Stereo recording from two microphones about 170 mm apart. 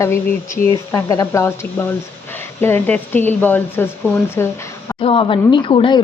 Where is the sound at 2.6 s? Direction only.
15° left (ahead or behind).